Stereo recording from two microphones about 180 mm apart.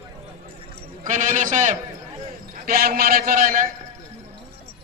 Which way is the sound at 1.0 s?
45° right (ahead or behind).